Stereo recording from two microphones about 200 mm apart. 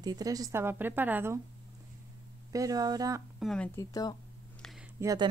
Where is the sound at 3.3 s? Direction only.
5° left (ahead or behind).